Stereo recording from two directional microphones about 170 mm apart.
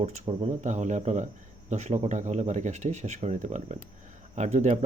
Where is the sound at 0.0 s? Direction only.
40° right (ahead or behind).